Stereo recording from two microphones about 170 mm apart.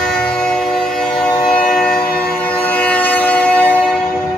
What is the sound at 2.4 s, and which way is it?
Train, 10° left (ahead or behind).